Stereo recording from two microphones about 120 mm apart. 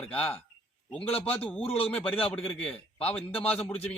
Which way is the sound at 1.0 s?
55° left (ahead or behind).